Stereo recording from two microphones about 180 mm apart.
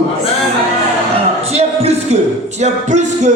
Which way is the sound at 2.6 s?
40° right (ahead or behind).